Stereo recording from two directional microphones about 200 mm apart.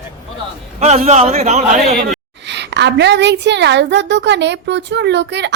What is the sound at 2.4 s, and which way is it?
A woman's voice, 60° right (ahead or behind).